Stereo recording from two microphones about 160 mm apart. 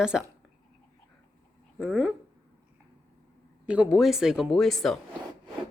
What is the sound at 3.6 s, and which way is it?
Speech, 5° right (ahead or behind).